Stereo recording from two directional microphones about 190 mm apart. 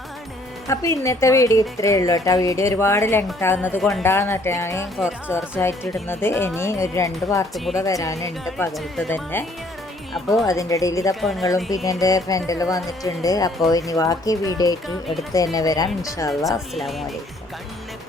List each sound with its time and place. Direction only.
0.7 s speech: 15° left (ahead or behind)
7.5 s speech: centre (ahead or behind)
7.8 s speech: 15° left (ahead or behind)
10.2 s speech: centre (ahead or behind)
10.4 s speech: 15° left (ahead or behind)
11.1 s speech: centre (ahead or behind)
11.4 s speech: 15° left (ahead or behind)
16.5 s speech: centre (ahead or behind)